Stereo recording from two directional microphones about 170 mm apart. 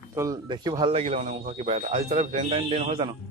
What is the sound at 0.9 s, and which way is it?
A man's voice, 35° right (ahead or behind).